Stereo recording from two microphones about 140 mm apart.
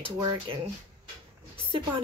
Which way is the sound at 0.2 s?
30° right (ahead or behind).